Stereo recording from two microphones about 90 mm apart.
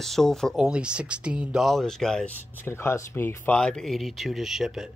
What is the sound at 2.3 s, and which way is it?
Speech, 20° left (ahead or behind).